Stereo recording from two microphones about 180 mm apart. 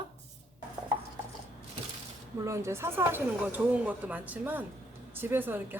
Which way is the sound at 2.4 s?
15° right (ahead or behind).